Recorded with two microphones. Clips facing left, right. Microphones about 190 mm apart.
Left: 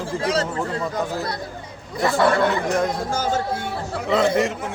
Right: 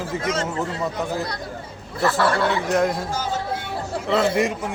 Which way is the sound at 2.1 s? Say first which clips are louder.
Left 5 dB; 5° right (ahead or behind).